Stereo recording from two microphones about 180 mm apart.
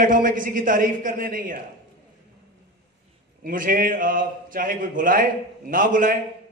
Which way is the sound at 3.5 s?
50° right (ahead or behind).